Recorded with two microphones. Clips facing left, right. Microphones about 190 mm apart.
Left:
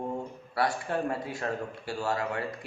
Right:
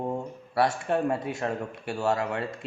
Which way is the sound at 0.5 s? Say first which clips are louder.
Right 4 dB; 25° right (ahead or behind).